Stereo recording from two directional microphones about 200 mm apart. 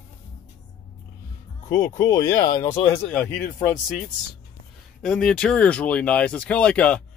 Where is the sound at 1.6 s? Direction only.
15° left (ahead or behind).